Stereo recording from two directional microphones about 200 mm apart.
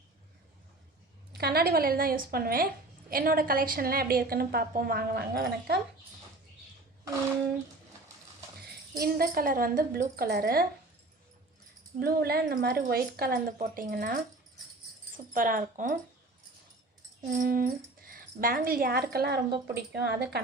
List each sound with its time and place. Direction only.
1.3 s speech: 55° right (ahead or behind)
9.0 s speech: 45° right (ahead or behind)
11.9 s speech: 50° right (ahead or behind)
15.3 s speech: 45° right (ahead or behind)
17.2 s speech: 40° right (ahead or behind)